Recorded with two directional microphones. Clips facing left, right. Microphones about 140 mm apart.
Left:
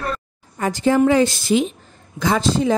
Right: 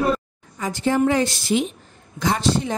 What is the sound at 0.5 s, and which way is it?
Speech, 75° left (ahead or behind).